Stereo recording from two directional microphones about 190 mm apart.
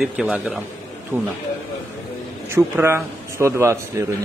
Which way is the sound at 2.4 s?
15° right (ahead or behind).